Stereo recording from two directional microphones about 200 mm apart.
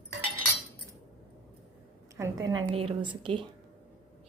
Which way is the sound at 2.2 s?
15° right (ahead or behind).